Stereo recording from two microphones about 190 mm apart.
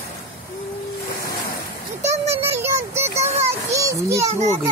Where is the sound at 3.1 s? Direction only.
35° right (ahead or behind).